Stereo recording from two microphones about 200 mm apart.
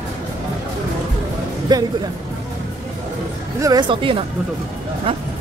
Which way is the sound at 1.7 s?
20° right (ahead or behind).